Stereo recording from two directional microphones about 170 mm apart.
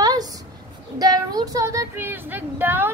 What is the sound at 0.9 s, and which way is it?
Speech, 20° right (ahead or behind).